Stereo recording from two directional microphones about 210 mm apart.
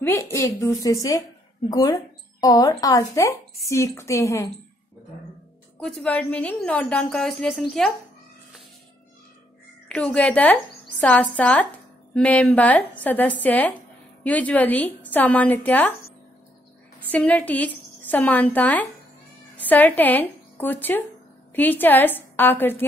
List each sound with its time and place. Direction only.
0.3 s a woman's voice: 15° left (ahead or behind)
5.8 s a woman's voice: 5° left (ahead or behind)
9.8 s a woman's voice: 5° left (ahead or behind)
17.1 s a woman's voice: 5° left (ahead or behind)